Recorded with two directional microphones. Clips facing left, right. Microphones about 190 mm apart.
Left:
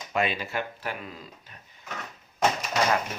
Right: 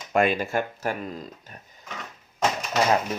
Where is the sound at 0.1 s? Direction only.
50° right (ahead or behind).